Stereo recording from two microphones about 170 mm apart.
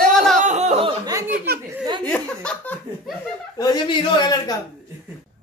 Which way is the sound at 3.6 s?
25° left (ahead or behind).